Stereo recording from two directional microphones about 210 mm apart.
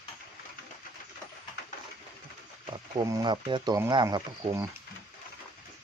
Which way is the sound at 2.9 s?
15° right (ahead or behind).